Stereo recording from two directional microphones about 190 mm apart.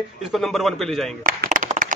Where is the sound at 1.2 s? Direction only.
45° right (ahead or behind).